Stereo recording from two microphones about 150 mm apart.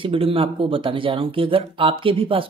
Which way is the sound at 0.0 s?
35° right (ahead or behind).